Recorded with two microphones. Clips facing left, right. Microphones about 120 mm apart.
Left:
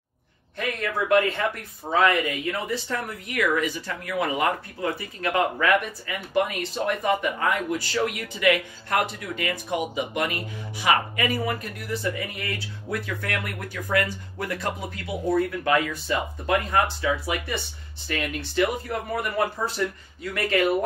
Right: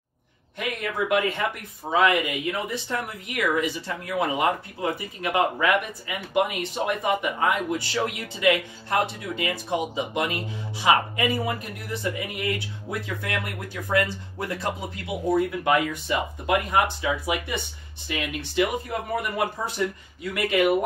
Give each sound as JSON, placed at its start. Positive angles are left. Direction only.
{"t": 0.6, "sound": "a man's voice", "side_deg": -15}